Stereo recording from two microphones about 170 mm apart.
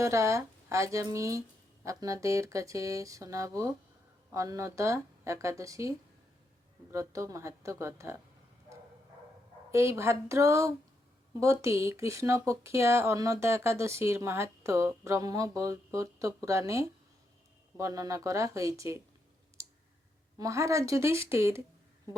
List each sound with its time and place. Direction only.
0.0 s speech: 20° right (ahead or behind)
6.9 s speech: 20° right (ahead or behind)
9.7 s speech: 15° right (ahead or behind)
19.6 s clicking: 15° right (ahead or behind)
20.4 s speech: 20° right (ahead or behind)